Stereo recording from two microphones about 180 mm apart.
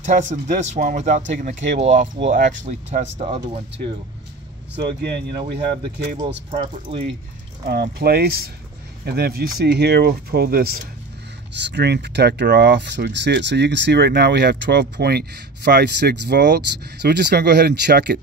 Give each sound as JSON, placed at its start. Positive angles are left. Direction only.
{"t": 0.0, "sound": "speech", "side_deg": -40}
{"t": 4.7, "sound": "speech", "side_deg": -70}
{"t": 6.5, "sound": "speech", "side_deg": -30}
{"t": 7.6, "sound": "speech", "side_deg": -55}
{"t": 11.5, "sound": "speech", "side_deg": -75}